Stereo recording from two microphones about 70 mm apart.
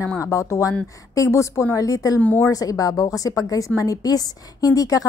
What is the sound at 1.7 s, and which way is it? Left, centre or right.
A woman's voice, left.